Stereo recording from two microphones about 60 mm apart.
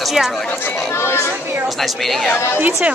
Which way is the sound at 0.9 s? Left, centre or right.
Left.